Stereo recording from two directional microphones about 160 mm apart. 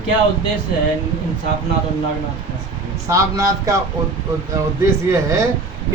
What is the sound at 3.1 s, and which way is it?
Speech, 20° right (ahead or behind).